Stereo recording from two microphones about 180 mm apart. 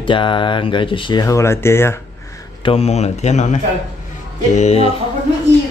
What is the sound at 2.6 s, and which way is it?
A man's voice, 30° left (ahead or behind).